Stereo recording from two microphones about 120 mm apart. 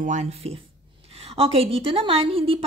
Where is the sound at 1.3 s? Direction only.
55° right (ahead or behind).